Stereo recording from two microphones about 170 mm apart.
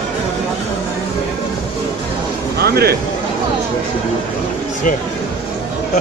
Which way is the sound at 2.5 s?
70° right (ahead or behind).